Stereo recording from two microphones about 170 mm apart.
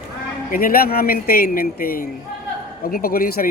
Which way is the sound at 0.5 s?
60° left (ahead or behind).